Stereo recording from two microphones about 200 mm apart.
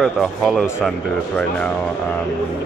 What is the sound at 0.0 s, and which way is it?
Speech, 5° left (ahead or behind).